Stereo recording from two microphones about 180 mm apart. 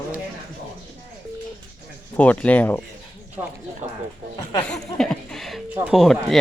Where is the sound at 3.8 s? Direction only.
40° right (ahead or behind).